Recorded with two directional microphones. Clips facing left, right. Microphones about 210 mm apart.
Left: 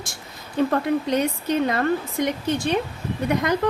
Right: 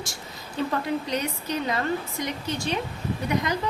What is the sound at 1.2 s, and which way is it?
A woman's voice, 55° left (ahead or behind).